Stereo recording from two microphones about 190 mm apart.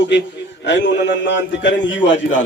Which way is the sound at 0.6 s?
65° left (ahead or behind).